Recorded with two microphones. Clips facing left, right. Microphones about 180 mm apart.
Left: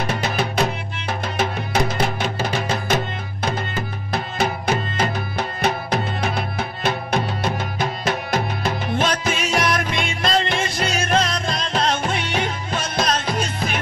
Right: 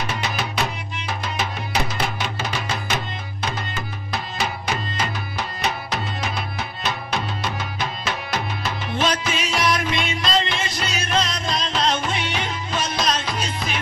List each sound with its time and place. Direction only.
0.1 s music: 55° left (ahead or behind)
4.1 s music: 55° left (ahead or behind)